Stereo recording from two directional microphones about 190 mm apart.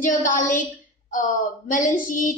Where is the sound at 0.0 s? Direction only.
45° left (ahead or behind).